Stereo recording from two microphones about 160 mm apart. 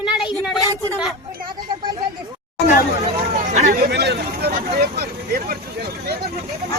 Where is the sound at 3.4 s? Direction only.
50° right (ahead or behind).